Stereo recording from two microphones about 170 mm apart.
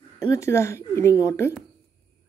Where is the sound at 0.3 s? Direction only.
15° left (ahead or behind).